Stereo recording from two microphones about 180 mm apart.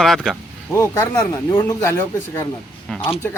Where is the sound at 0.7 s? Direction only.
15° left (ahead or behind).